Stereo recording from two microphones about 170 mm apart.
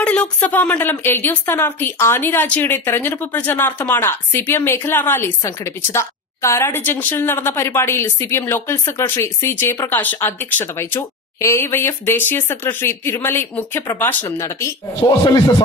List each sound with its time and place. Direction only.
0.0 s a woman's voice: 5° left (ahead or behind); by 15.5 s 25° left (ahead or behind)